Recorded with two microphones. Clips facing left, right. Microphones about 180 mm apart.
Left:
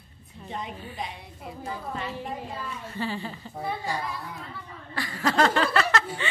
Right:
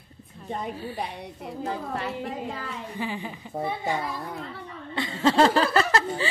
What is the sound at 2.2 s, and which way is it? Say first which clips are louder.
Speech: right 2 dB; 80° right.